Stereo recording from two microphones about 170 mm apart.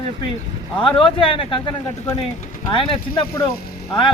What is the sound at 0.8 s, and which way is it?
Speech, 30° left (ahead or behind).